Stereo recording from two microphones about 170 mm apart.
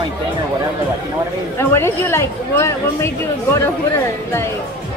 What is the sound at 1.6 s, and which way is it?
Speech, 15° left (ahead or behind).